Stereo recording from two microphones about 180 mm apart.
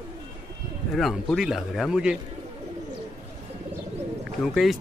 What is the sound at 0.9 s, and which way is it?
Speech, centre (ahead or behind).